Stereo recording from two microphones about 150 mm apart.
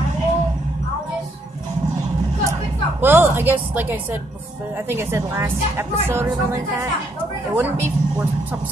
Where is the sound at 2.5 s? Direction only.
15° right (ahead or behind).